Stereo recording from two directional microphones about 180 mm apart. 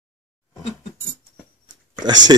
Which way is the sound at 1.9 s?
25° right (ahead or behind).